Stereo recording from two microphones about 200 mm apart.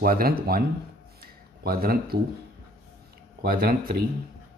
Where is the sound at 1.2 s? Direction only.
50° right (ahead or behind).